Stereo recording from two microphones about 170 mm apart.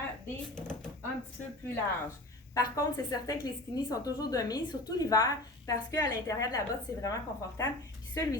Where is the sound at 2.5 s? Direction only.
20° left (ahead or behind).